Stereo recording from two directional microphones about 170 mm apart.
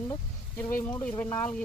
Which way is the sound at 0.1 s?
15° left (ahead or behind).